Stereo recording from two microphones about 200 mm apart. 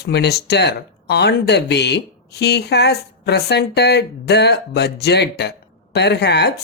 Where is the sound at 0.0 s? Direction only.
55° left (ahead or behind).